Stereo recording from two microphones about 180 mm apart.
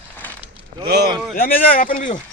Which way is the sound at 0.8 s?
65° right (ahead or behind).